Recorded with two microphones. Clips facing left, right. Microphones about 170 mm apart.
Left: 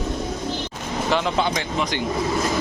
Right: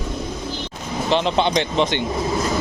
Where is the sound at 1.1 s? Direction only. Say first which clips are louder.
Right 4 dB; 25° right (ahead or behind).